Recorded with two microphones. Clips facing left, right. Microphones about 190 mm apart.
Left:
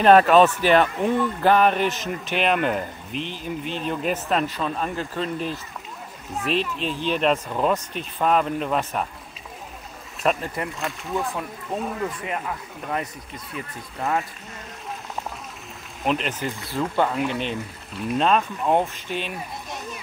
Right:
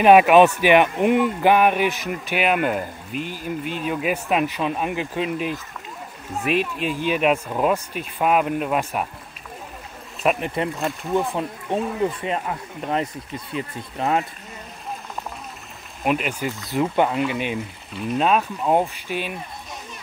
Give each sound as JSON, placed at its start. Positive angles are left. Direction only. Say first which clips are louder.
{"t": 0.0, "sound": "speech", "louder": "right 2 dB", "side_deg": -10}
{"t": 10.4, "sound": "speech", "louder": "right 5 dB", "side_deg": -20}
{"t": 16.0, "sound": "speech", "louder": "right 2 dB", "side_deg": -10}